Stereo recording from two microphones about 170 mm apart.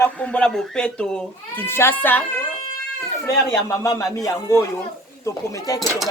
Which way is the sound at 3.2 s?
20° left (ahead or behind).